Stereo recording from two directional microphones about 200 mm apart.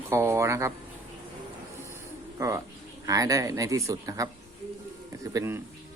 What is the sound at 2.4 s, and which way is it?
Speech, 15° right (ahead or behind).